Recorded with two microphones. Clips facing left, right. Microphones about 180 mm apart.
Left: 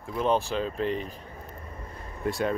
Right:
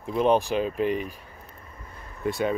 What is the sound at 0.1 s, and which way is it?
Speech, 20° right (ahead or behind).